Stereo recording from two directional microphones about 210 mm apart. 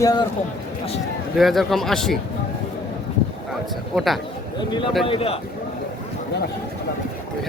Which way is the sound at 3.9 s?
Centre (ahead or behind).